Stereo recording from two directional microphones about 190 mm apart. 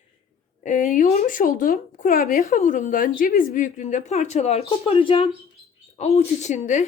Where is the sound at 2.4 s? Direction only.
40° left (ahead or behind).